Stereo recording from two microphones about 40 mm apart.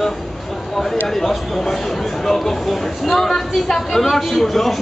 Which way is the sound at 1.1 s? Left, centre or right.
Centre.